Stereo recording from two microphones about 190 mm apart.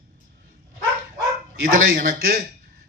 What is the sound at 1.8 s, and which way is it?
Speech, 50° right (ahead or behind).